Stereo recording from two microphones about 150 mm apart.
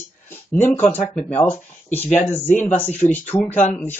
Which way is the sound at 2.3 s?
15° left (ahead or behind).